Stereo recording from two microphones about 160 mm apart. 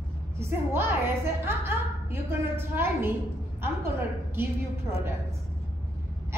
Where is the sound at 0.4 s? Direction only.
15° right (ahead or behind).